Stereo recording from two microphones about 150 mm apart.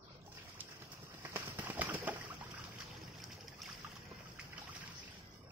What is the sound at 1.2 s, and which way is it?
Horse, 15° right (ahead or behind).